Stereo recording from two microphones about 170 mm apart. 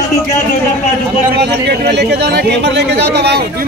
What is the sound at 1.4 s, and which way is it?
Speech, 70° right (ahead or behind).